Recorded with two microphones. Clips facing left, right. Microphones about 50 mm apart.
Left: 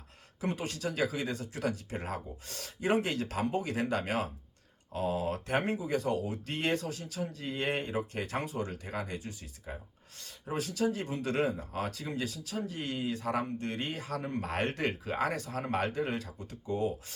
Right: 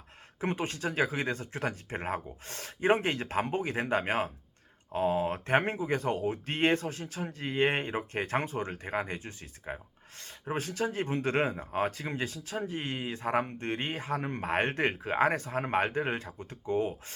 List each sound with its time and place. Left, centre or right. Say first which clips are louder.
0.3 s speech: right 3 dB; right